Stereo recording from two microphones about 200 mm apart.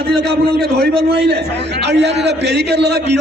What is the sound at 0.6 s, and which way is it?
A man's voice, 55° right (ahead or behind).